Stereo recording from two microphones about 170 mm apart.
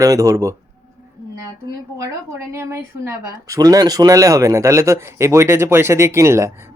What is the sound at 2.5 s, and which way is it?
Speech, 15° right (ahead or behind).